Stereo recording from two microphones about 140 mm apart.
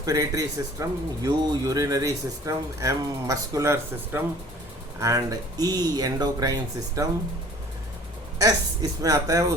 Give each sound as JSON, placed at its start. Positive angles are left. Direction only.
{"t": 0.0, "sound": "speech", "side_deg": -25}
{"t": 8.4, "sound": "speech", "side_deg": -25}